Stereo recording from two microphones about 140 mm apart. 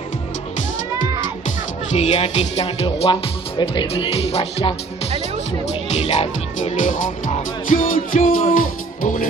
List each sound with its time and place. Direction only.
1.9 s speech: 50° left (ahead or behind)
5.9 s speech: 50° left (ahead or behind); by 9.2 s 65° left (ahead or behind)